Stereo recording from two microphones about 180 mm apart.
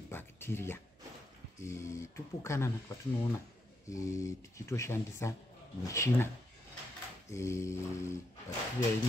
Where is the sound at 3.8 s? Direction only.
15° left (ahead or behind).